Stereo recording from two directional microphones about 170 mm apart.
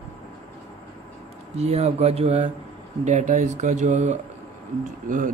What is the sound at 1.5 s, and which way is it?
Speech, 40° right (ahead or behind).